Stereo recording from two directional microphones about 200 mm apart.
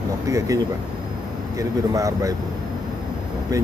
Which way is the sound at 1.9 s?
15° right (ahead or behind).